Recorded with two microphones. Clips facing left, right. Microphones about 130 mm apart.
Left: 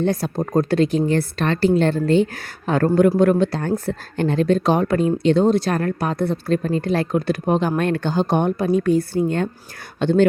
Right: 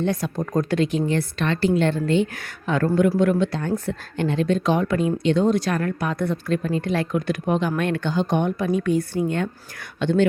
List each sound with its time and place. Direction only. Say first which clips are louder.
0.0 s a woman's voice: left 3 dB; 35° left (ahead or behind)